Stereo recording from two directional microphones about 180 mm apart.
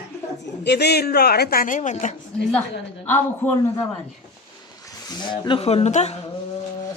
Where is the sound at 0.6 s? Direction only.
65° left (ahead or behind); by 2.1 s 45° left (ahead or behind).